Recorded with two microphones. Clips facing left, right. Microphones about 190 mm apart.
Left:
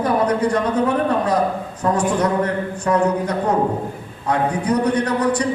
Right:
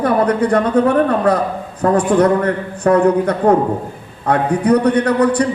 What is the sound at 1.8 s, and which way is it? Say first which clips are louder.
A man's voice: right 6 dB; 55° right (ahead or behind).